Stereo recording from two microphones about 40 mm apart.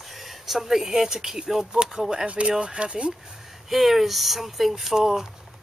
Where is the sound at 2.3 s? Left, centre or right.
Right.